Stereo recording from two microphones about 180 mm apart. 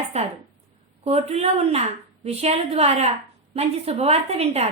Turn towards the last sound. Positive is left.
turn(degrees=-35)  # may be behind; listen again after turning